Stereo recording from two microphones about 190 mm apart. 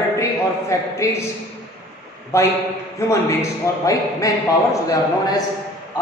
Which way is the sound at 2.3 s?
15° left (ahead or behind).